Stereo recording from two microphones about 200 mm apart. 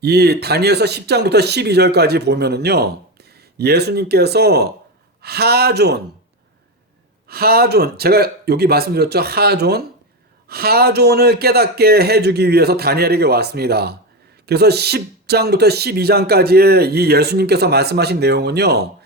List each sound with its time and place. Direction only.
0.0 s speech: 55° right (ahead or behind)
7.3 s speech: 50° right (ahead or behind)